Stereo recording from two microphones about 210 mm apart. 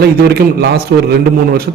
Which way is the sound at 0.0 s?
50° right (ahead or behind).